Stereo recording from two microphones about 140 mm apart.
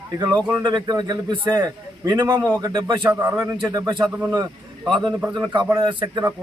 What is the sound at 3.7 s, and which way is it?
Speech, 35° right (ahead or behind).